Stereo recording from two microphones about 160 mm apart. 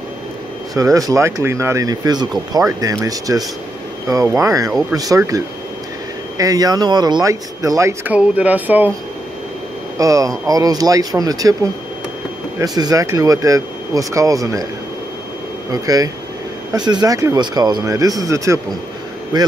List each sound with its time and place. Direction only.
0.7 s speech: 20° right (ahead or behind)
9.9 s speech: 20° right (ahead or behind)
12.5 s speech: 25° right (ahead or behind)
15.7 s speech: 20° right (ahead or behind)